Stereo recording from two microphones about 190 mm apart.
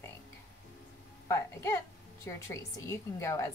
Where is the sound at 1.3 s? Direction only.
15° left (ahead or behind).